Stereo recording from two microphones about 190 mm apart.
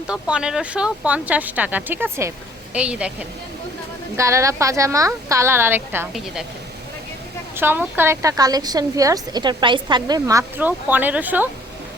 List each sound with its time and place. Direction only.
0.1 s a woman's voice: 5° right (ahead or behind)
4.2 s a woman's voice: 15° right (ahead or behind)
7.5 s a woman's voice: 10° right (ahead or behind)